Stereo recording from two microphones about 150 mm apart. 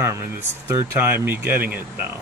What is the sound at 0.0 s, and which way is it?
Speech, 15° right (ahead or behind).